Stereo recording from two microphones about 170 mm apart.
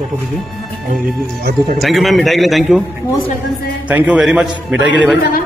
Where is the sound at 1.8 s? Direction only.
Centre (ahead or behind).